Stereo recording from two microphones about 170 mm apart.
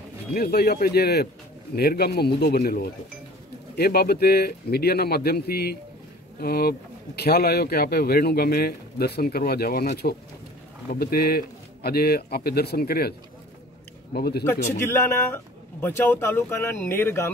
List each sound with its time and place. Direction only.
0.3 s a man's voice: 65° left (ahead or behind)
10.9 s a man's voice: 60° left (ahead or behind)
14.1 s speech: 70° left (ahead or behind)
14.9 s speech: 15° left (ahead or behind)